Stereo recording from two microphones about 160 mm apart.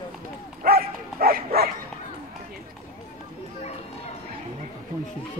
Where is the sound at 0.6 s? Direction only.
70° right (ahead or behind).